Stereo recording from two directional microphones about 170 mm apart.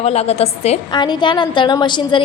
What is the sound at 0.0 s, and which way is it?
Speech, 40° left (ahead or behind).